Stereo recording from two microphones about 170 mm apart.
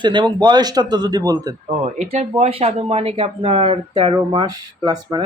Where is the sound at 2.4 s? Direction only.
35° right (ahead or behind).